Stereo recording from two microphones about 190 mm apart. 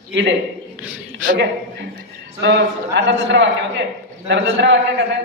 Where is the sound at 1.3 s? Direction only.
70° right (ahead or behind).